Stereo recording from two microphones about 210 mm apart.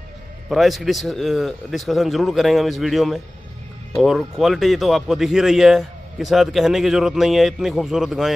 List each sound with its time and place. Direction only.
0.5 s speech: centre (ahead or behind)